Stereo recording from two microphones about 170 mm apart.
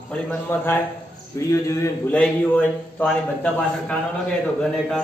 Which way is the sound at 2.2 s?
5° left (ahead or behind).